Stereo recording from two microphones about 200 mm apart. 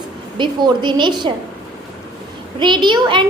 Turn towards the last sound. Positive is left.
turn(degrees=-25)  # may be behind; listen again after turning